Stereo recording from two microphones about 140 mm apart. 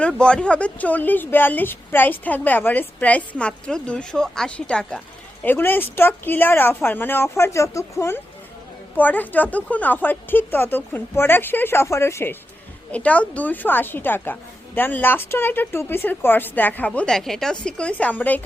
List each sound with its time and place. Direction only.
0.0 s speech: 5° left (ahead or behind)